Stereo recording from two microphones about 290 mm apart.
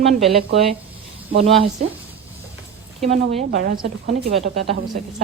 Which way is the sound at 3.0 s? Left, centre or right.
Right.